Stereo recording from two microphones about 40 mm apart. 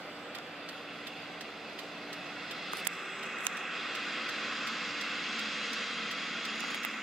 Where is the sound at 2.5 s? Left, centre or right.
Centre.